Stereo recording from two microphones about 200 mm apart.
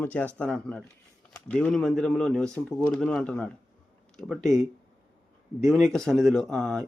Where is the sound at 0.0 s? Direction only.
10° left (ahead or behind).